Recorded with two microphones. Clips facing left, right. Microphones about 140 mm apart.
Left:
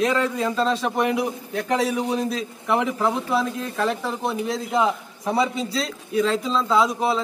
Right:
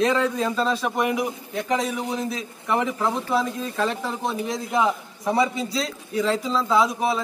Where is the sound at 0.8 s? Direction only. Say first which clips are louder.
Left 1 dB; 5° right (ahead or behind).